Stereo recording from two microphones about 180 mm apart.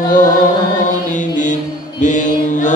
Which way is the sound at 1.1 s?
45° left (ahead or behind).